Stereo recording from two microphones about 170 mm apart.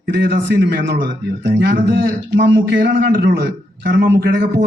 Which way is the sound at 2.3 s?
75° right (ahead or behind).